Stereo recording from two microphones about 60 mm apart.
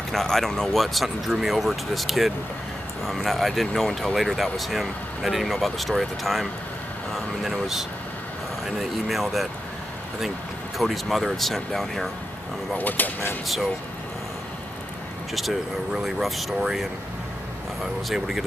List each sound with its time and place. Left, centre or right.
0.1 s speech: centre
10.8 s speech: centre
12.7 s speech: left
15.9 s speech: centre